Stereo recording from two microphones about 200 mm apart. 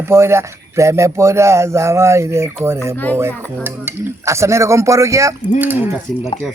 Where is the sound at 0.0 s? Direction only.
15° right (ahead or behind).